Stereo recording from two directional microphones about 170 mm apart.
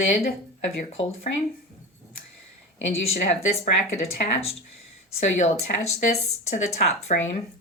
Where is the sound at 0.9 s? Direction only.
40° left (ahead or behind).